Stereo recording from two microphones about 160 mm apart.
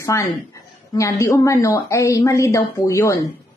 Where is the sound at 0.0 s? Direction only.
20° left (ahead or behind).